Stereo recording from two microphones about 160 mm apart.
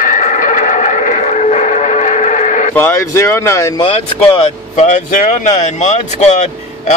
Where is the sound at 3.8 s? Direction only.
35° left (ahead or behind).